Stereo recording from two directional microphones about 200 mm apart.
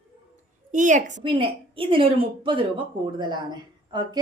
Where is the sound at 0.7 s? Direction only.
40° right (ahead or behind).